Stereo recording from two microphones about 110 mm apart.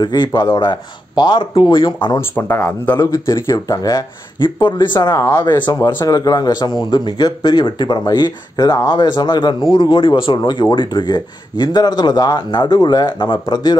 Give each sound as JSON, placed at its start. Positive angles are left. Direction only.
{"t": 0.0, "sound": "speech", "side_deg": 40}
{"t": 2.1, "sound": "speech", "side_deg": 20}
{"t": 3.0, "sound": "speech", "side_deg": 30}
{"t": 5.1, "sound": "speech", "side_deg": 30}
{"t": 5.7, "sound": "speech", "side_deg": 25}
{"t": 5.9, "sound": "speech", "side_deg": 35}